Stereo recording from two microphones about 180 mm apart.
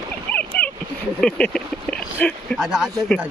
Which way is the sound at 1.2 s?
5° left (ahead or behind).